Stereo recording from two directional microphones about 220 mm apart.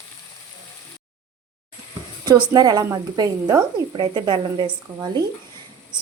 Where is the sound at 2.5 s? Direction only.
20° right (ahead or behind).